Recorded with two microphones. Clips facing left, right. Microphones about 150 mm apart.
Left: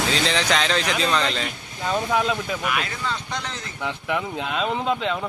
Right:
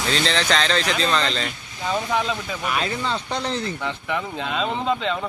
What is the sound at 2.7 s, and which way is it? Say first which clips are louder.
Speech: right 6 dB; 30° right (ahead or behind).